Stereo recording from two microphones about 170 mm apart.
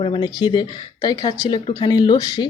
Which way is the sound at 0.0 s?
30° left (ahead or behind).